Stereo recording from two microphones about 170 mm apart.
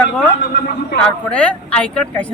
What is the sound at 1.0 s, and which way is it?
Speech, 5° left (ahead or behind).